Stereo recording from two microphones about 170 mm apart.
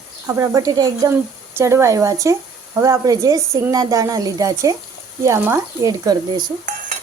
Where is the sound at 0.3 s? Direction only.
20° right (ahead or behind).